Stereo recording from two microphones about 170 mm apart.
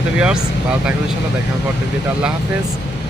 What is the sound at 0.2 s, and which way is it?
Speech, 5° right (ahead or behind).